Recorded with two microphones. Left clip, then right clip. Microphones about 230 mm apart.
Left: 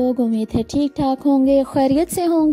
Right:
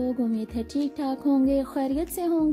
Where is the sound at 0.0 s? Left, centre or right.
Left.